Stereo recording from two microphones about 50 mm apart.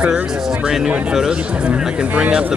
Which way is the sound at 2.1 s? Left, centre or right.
Right.